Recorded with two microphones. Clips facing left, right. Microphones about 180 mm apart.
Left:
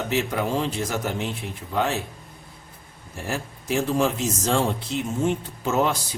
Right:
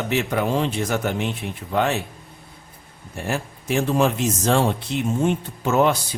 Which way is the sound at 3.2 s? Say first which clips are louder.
Right 3 dB; 65° right (ahead or behind).